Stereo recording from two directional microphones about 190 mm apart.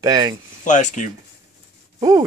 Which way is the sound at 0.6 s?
40° left (ahead or behind).